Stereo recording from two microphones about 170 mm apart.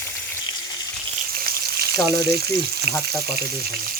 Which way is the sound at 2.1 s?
70° right (ahead or behind).